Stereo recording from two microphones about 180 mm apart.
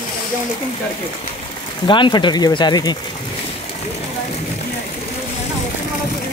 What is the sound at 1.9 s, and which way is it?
Speech, 25° left (ahead or behind).